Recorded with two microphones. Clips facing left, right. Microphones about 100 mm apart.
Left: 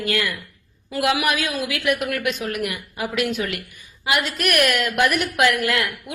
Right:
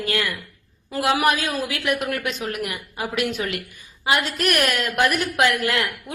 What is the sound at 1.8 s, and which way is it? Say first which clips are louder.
A woman's voice: left 3 dB; 25° right (ahead or behind).